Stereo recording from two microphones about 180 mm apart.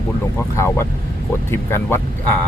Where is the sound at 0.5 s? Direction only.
15° left (ahead or behind).